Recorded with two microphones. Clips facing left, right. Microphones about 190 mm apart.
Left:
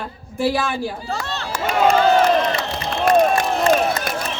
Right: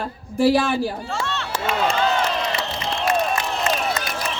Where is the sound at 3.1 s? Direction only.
35° left (ahead or behind).